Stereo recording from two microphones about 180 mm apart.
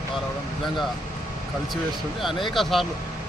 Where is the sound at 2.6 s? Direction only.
Centre (ahead or behind).